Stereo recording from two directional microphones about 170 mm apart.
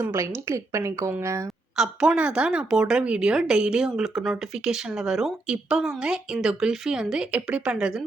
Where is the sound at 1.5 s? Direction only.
Centre (ahead or behind).